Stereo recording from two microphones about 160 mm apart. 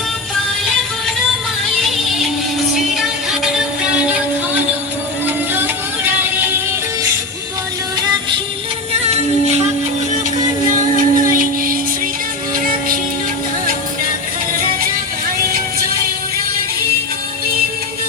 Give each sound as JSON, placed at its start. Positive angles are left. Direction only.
{"t": 0.6, "sound": "music", "side_deg": 0}
{"t": 2.9, "sound": "music", "side_deg": 0}
{"t": 9.0, "sound": "music", "side_deg": -40}
{"t": 10.7, "sound": "music", "side_deg": -55}